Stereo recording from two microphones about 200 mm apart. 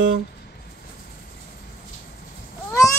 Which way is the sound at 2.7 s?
15° left (ahead or behind).